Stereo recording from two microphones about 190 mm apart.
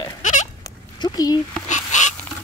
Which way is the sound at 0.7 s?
20° left (ahead or behind).